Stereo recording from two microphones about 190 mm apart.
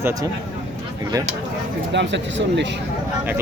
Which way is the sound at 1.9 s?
70° right (ahead or behind).